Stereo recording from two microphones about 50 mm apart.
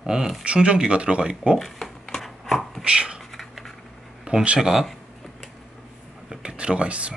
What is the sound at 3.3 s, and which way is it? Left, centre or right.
Cutlery, centre.